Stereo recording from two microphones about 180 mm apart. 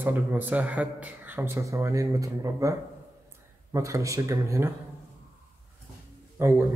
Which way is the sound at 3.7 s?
15° right (ahead or behind).